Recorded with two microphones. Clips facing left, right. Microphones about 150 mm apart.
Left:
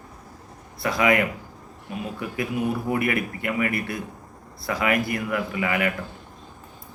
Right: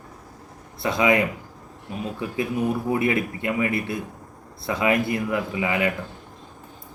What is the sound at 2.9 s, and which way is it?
Speech, 25° right (ahead or behind).